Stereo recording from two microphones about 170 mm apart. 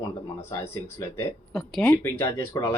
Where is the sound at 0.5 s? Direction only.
15° left (ahead or behind).